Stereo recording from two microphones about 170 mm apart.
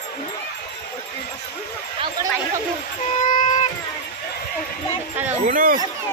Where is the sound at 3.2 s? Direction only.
50° left (ahead or behind).